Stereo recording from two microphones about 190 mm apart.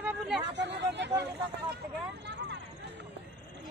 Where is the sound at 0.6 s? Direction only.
65° right (ahead or behind).